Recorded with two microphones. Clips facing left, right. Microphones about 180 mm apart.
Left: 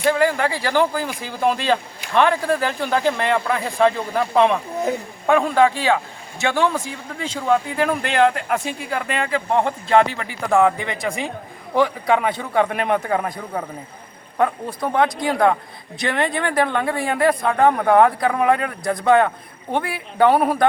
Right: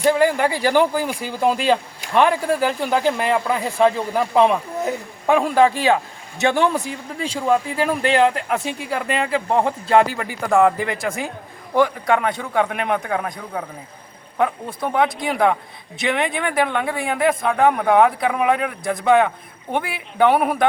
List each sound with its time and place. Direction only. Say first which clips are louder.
0.0 s speech: right 2 dB; 15° right (ahead or behind)